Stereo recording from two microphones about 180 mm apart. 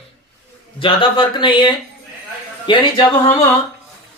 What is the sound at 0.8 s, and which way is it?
Speech, 30° left (ahead or behind).